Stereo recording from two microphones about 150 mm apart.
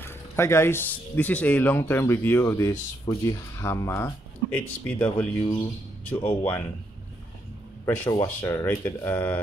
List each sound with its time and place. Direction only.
0.0 s speech: 15° left (ahead or behind)
7.8 s speech: 15° left (ahead or behind)